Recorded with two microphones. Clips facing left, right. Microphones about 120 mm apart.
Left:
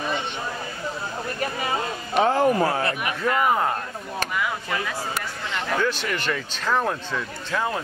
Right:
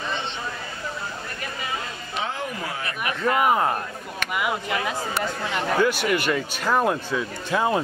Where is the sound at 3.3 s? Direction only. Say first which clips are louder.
Right 1 dB; 15° right (ahead or behind).